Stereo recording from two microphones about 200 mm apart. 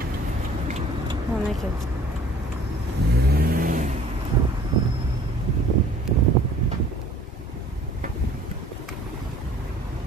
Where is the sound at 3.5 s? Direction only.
45° right (ahead or behind).